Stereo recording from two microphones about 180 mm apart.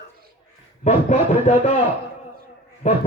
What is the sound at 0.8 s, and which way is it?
Music, 40° left (ahead or behind).